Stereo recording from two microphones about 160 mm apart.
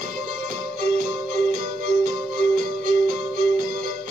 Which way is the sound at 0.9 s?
50° right (ahead or behind).